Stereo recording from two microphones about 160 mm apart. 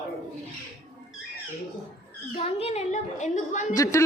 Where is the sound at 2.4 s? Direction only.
40° left (ahead or behind).